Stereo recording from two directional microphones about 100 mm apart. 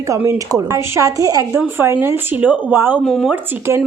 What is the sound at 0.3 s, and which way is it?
A woman's voice, 35° right (ahead or behind).